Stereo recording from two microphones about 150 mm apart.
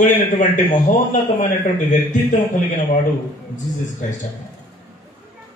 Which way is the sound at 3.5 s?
55° left (ahead or behind).